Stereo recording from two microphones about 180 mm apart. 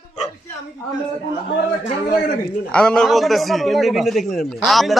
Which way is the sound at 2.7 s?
5° left (ahead or behind).